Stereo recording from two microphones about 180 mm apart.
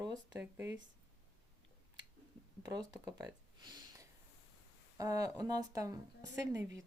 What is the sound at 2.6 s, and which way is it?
Speech, 20° right (ahead or behind).